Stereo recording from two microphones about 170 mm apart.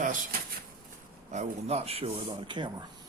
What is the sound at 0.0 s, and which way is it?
Drawer open or close, 50° right (ahead or behind).